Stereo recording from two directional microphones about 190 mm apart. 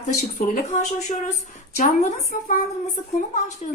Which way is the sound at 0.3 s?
40° left (ahead or behind).